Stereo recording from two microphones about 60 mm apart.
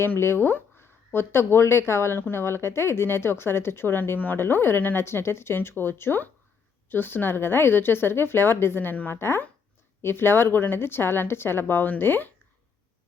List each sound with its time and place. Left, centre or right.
0.2 s a woman's voice: left